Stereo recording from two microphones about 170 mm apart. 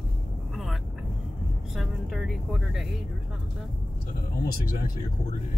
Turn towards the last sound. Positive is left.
turn(degrees=55)  # may be behind; listen again after turning